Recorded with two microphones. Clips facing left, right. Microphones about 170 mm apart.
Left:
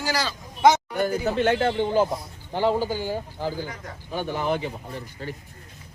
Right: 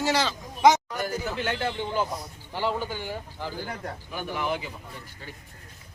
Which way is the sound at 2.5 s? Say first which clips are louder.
Left 6 dB; 35° left (ahead or behind).